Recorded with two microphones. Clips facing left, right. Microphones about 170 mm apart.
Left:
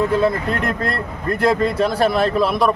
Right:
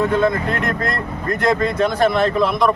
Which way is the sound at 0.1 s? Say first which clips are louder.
Even; 30° left (ahead or behind).